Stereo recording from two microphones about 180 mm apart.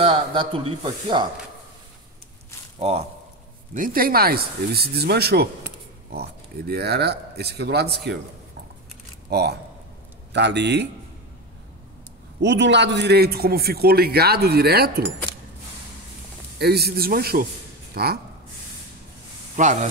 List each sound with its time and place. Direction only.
0.0 s speech: 30° right (ahead or behind)
2.8 s speech: 35° right (ahead or behind)
3.7 s a man's voice: 50° right (ahead or behind)
9.3 s a man's voice: 65° right (ahead or behind)
12.4 s a man's voice: 75° right (ahead or behind); by 15.0 s 60° right (ahead or behind)
16.5 s a man's voice: 60° right (ahead or behind)
19.5 s speech: 40° right (ahead or behind)